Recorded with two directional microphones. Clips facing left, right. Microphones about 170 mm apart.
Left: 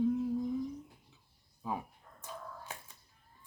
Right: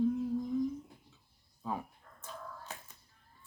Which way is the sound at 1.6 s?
10° left (ahead or behind).